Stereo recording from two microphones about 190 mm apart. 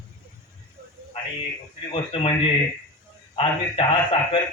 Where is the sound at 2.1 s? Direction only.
30° left (ahead or behind).